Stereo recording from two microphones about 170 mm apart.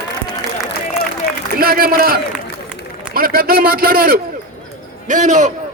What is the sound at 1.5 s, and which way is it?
A man's voice, 60° right (ahead or behind).